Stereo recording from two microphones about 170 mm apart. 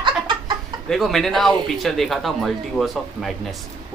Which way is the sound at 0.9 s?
Centre (ahead or behind).